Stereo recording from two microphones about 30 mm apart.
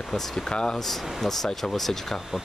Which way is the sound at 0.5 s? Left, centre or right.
Left.